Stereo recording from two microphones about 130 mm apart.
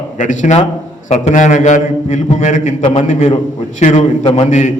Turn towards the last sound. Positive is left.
turn(degrees=65)  # may be behind; listen again after turning